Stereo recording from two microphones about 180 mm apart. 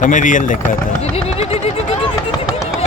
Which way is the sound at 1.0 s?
35° left (ahead or behind).